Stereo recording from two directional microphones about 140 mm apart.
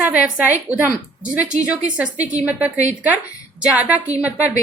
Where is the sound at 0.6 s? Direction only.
10° right (ahead or behind).